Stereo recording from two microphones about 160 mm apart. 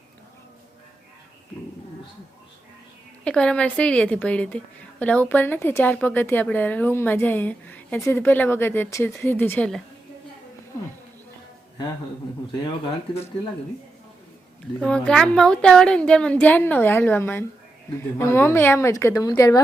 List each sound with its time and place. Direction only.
3.2 s a woman's voice: 5° left (ahead or behind)
14.8 s a woman's voice: 5° left (ahead or behind); by 19.6 s 20° left (ahead or behind)